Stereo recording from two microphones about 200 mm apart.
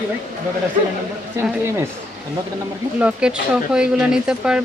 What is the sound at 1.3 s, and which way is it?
Speech, 10° right (ahead or behind).